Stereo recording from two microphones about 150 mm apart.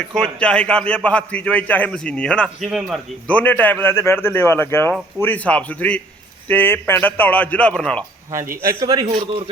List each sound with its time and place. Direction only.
0.0 s a man's voice: 5° left (ahead or behind)
3.2 s a man's voice: 10° left (ahead or behind)
8.8 s a man's voice: 25° right (ahead or behind)